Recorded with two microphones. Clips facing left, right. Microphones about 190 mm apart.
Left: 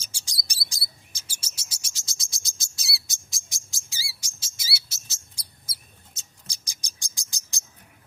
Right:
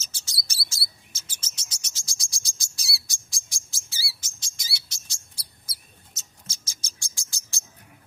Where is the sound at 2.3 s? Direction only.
20° left (ahead or behind); by 5.2 s 5° left (ahead or behind).